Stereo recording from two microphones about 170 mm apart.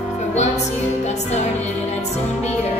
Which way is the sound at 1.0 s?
40° left (ahead or behind).